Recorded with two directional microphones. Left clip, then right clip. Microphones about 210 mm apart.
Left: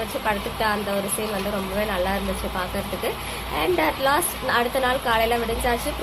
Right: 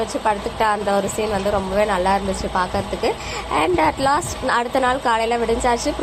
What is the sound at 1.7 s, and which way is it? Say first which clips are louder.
Speech: right 6 dB; 15° right (ahead or behind).